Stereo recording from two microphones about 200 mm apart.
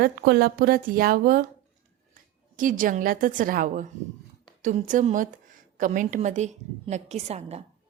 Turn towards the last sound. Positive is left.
turn(degrees=-30)  # may be behind; listen again after turning